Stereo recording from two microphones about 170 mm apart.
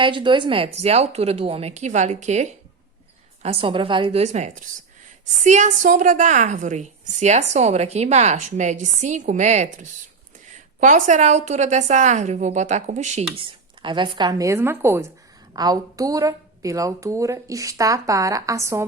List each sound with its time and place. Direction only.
0.0 s a woman's voice: 30° right (ahead or behind); by 13.2 s 45° right (ahead or behind)
13.3 s a woman's voice: 30° right (ahead or behind)